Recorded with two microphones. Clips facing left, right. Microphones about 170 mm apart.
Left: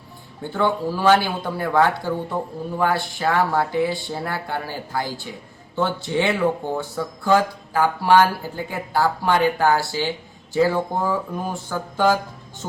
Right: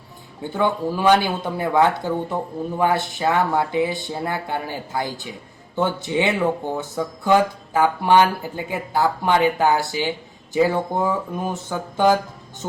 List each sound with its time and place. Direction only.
0.5 s speech: 20° right (ahead or behind)